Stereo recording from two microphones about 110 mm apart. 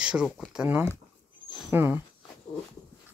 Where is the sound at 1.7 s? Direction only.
20° right (ahead or behind).